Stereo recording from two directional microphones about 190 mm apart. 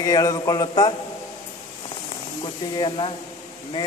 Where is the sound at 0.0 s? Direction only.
20° left (ahead or behind).